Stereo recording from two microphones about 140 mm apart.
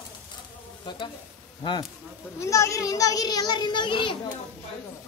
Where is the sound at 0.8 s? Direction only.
35° left (ahead or behind).